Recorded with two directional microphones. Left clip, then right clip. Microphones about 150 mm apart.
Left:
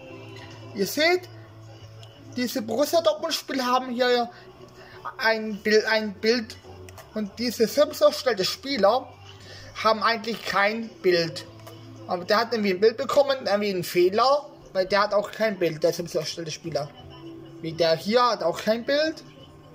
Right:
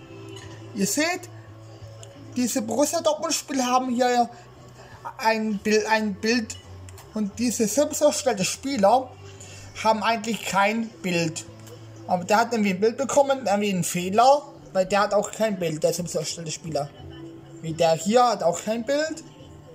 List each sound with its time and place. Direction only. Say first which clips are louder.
0.7 s a man's voice: left 3 dB; 15° right (ahead or behind)
2.3 s a man's voice: right 1 dB; 15° right (ahead or behind)